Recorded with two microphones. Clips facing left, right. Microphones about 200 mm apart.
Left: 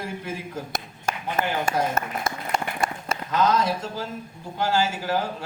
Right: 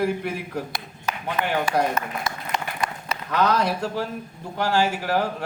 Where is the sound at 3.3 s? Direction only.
70° right (ahead or behind).